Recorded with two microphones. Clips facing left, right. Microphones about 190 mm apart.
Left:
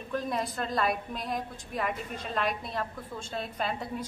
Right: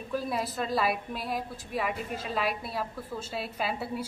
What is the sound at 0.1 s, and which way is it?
A woman's voice, 5° right (ahead or behind).